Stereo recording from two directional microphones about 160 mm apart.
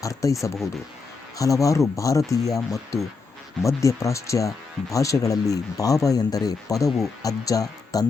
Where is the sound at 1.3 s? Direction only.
20° left (ahead or behind).